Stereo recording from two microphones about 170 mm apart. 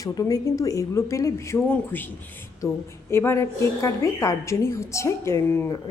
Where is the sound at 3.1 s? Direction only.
15° left (ahead or behind).